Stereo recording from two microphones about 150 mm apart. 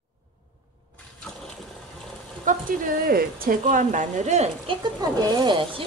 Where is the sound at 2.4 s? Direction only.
70° right (ahead or behind); by 4.5 s 55° right (ahead or behind).